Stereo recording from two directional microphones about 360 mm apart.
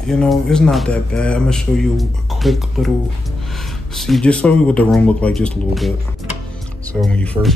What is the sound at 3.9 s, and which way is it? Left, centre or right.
Speech, centre.